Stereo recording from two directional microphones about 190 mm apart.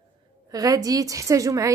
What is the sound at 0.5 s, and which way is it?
A woman's voice, 20° right (ahead or behind).